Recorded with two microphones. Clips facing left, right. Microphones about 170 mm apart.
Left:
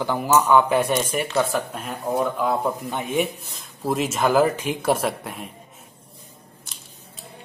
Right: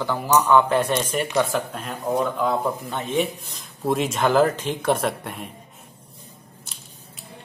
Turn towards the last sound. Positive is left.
turn(degrees=0)  # may be behind; listen again after turning